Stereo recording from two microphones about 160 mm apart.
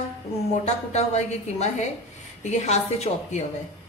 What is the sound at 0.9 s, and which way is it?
A woman's voice, 45° left (ahead or behind).